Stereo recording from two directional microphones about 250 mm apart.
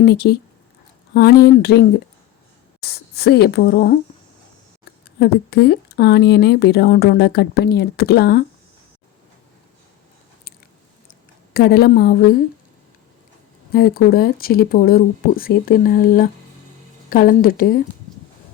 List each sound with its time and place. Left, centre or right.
0.0 s speech: left
2.8 s speech: left
5.2 s speech: left
11.5 s speech: left
13.7 s speech: left